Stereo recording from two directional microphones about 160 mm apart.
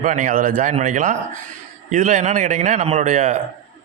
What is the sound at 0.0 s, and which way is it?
A man's voice, 50° right (ahead or behind).